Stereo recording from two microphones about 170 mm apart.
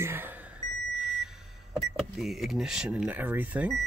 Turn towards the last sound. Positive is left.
turn(degrees=-10)  # may be behind; listen again after turning